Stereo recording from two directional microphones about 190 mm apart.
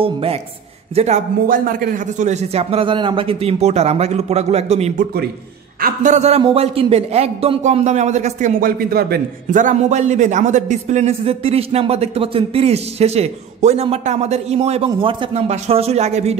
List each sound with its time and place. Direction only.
0.0 s a man's voice: 30° right (ahead or behind)
5.8 s a man's voice: 45° right (ahead or behind)